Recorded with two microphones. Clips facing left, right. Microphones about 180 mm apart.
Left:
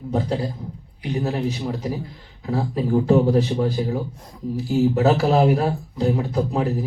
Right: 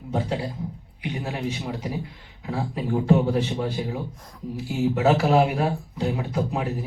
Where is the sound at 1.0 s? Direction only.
40° left (ahead or behind).